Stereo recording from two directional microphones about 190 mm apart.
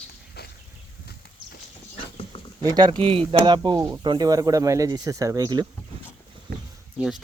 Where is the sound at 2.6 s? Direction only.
20° right (ahead or behind).